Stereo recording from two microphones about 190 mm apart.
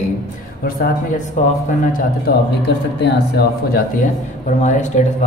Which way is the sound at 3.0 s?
60° left (ahead or behind).